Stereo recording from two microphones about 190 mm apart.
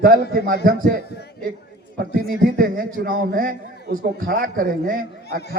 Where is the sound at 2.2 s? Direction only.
50° right (ahead or behind).